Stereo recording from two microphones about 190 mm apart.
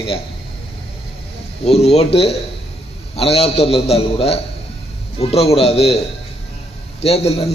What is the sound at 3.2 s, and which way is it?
A man's voice, 30° left (ahead or behind).